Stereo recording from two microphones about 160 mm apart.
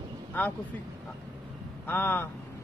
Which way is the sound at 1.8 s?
15° left (ahead or behind).